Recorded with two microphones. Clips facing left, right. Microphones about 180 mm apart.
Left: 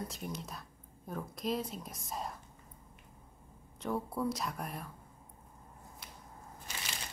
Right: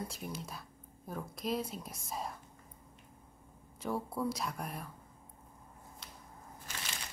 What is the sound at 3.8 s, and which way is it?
Speech, centre (ahead or behind).